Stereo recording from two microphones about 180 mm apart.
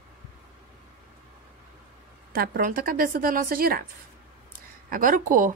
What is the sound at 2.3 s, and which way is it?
A woman's voice, 55° right (ahead or behind).